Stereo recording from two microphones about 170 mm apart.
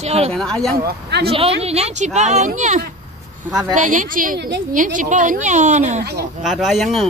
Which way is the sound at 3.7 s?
50° right (ahead or behind).